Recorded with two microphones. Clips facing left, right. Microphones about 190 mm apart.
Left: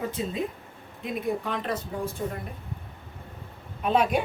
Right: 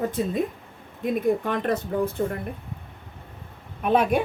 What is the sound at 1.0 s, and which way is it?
Speech, 50° right (ahead or behind).